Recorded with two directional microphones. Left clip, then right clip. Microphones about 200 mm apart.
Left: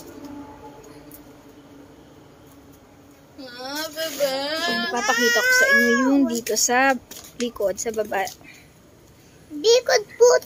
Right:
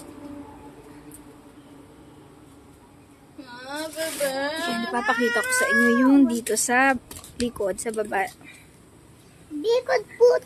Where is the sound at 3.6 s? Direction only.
60° left (ahead or behind).